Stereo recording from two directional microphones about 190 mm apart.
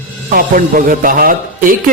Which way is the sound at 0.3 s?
45° right (ahead or behind).